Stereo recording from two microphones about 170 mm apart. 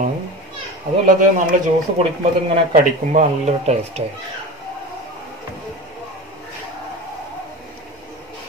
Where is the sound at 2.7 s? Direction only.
50° right (ahead or behind).